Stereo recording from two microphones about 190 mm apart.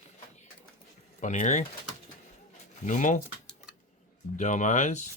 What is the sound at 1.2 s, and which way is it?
Speech, 40° left (ahead or behind).